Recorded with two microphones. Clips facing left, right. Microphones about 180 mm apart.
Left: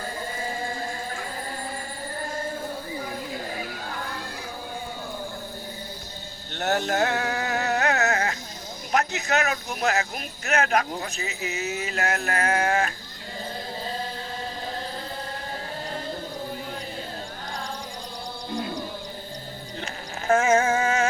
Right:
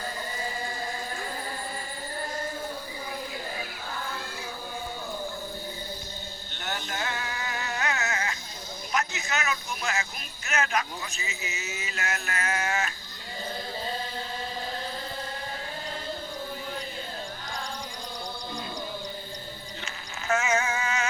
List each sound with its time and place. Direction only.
6.5 s a sound: 65° left (ahead or behind)
8.9 s speech: 60° left (ahead or behind)
19.8 s sheep: 50° left (ahead or behind)